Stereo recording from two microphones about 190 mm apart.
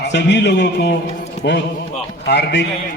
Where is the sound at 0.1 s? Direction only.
65° left (ahead or behind).